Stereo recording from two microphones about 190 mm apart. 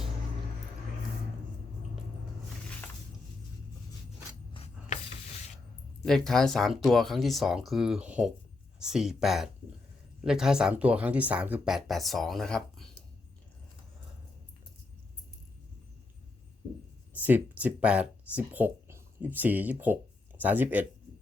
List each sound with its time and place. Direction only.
4.5 s a sound: 30° left (ahead or behind)
6.1 s speech: centre (ahead or behind)
17.2 s speech: 10° right (ahead or behind)